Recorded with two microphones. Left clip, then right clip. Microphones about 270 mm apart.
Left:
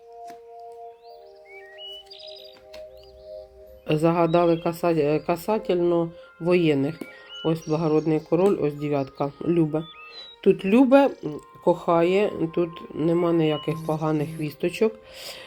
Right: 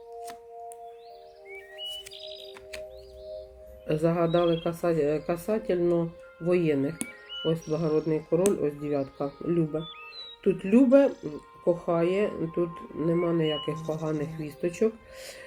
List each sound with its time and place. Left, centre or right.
3.8 s speech: left